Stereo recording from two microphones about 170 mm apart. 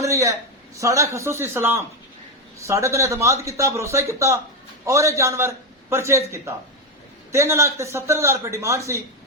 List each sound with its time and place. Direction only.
0.0 s a sound: 20° right (ahead or behind)
0.8 s a man's voice: 20° right (ahead or behind)
7.3 s speech: 15° right (ahead or behind)